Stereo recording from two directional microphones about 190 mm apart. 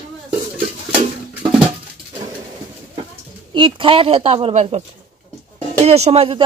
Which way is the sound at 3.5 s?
25° right (ahead or behind).